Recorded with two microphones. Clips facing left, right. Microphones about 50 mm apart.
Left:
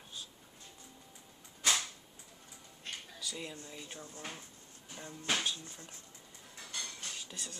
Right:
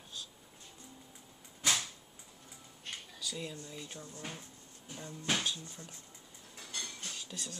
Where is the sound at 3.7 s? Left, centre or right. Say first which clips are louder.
Right 1 dB; centre.